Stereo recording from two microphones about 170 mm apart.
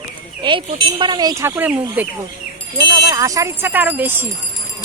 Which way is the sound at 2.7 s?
25° right (ahead or behind).